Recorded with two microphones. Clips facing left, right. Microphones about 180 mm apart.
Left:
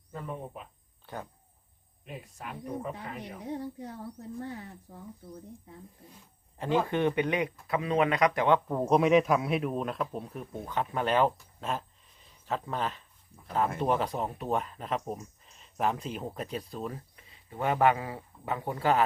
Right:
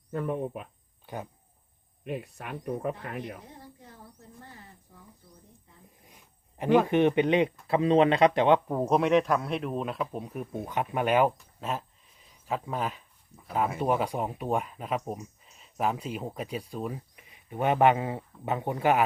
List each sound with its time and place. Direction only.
0.1 s speech: 60° right (ahead or behind)
1.0 s speech: 15° right (ahead or behind)
2.0 s speech: 65° right (ahead or behind)
3.4 s a woman's voice: 80° left
6.1 s speech: 15° right (ahead or behind)
8.6 s speech: 5° right (ahead or behind)